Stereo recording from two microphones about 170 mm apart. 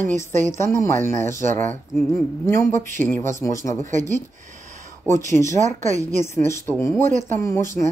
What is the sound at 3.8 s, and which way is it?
Speech, 45° right (ahead or behind).